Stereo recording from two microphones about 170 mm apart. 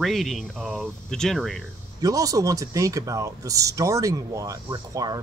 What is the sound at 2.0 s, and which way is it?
Speech, 20° right (ahead or behind).